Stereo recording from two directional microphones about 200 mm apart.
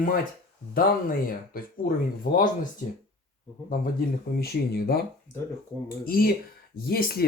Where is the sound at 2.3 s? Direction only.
45° left (ahead or behind).